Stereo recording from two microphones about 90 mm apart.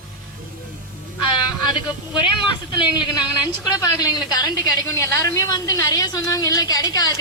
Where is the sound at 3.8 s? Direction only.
45° left (ahead or behind).